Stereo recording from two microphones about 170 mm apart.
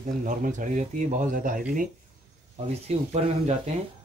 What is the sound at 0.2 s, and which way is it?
A man's voice, 50° right (ahead or behind).